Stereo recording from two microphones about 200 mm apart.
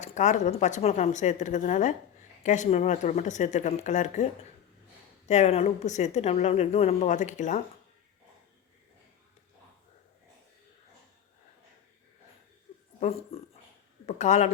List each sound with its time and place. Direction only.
0.0 s a woman's voice: 35° left (ahead or behind)
5.3 s a woman's voice: 30° left (ahead or behind)
13.0 s a woman's voice: 30° left (ahead or behind)